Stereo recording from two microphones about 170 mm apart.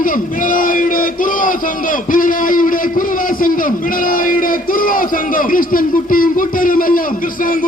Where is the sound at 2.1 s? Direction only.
55° left (ahead or behind).